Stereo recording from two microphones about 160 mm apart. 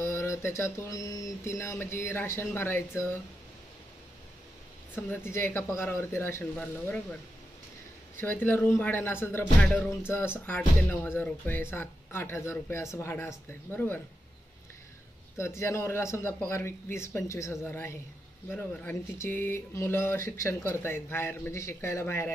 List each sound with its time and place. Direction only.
0.0 s speech: 15° left (ahead or behind)
5.1 s speech: 15° left (ahead or behind)
8.2 s speech: 10° left (ahead or behind)
15.3 s speech: 15° left (ahead or behind)